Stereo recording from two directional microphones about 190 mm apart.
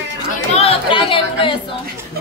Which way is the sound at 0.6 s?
30° left (ahead or behind).